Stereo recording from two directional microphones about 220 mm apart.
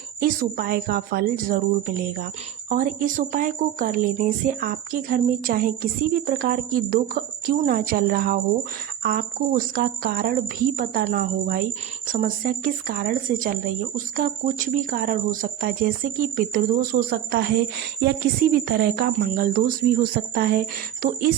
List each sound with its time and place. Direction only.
0.2 s a woman's voice: 40° right (ahead or behind)